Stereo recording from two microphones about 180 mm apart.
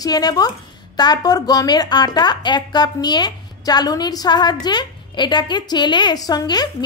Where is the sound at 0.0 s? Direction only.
20° left (ahead or behind).